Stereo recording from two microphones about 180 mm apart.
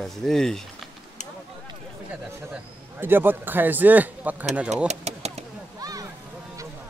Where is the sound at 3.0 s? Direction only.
10° right (ahead or behind).